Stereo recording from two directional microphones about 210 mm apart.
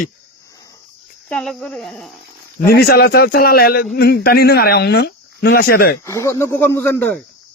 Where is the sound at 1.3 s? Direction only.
5° left (ahead or behind).